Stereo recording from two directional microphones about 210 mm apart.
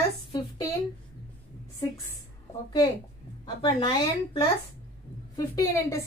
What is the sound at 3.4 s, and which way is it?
A woman's voice, 20° left (ahead or behind).